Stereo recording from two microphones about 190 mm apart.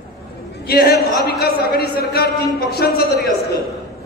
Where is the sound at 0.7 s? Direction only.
55° left (ahead or behind).